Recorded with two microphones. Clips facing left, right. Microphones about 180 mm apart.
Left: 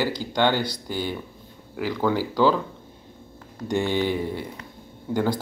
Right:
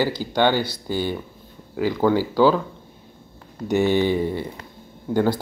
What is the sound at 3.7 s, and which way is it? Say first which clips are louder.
Speech: right 5 dB; 10° right (ahead or behind).